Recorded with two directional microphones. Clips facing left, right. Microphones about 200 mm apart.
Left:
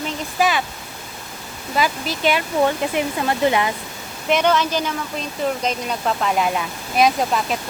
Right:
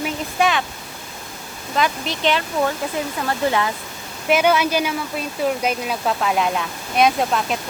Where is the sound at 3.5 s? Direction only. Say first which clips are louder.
Left 1 dB; 15° left (ahead or behind).